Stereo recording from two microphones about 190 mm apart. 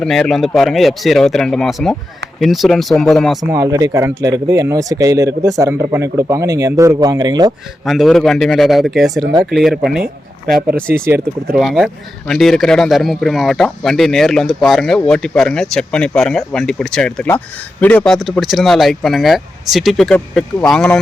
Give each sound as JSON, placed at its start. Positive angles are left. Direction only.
{"t": 0.0, "sound": "speech", "side_deg": 0}
{"t": 3.5, "sound": "speech", "side_deg": -15}
{"t": 7.9, "sound": "speech", "side_deg": 0}
{"t": 10.9, "sound": "speech", "side_deg": -15}
{"t": 11.5, "sound": "speech", "side_deg": 0}